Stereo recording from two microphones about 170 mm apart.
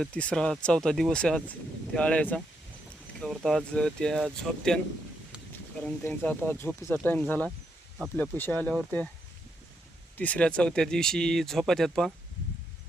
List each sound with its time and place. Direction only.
0.0 s speech: 5° left (ahead or behind)
5.8 s speech: 10° left (ahead or behind)
10.2 s speech: 10° left (ahead or behind)